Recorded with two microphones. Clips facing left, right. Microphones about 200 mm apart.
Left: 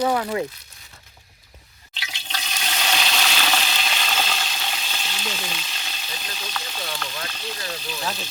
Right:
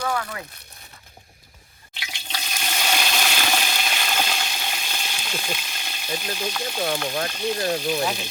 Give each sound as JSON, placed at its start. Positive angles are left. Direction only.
{"t": 0.1, "sound": "speech", "side_deg": 25}
{"t": 1.9, "sound": "toilet flush", "side_deg": -10}
{"t": 7.3, "sound": "speech", "side_deg": -15}
{"t": 7.6, "sound": "speech", "side_deg": -55}
{"t": 8.0, "sound": "speech", "side_deg": -15}